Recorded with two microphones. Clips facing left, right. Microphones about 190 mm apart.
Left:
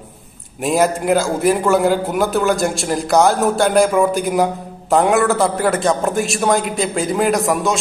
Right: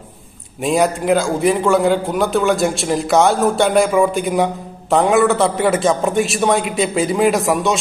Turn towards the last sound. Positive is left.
turn(degrees=0)  # may be behind; listen again after turning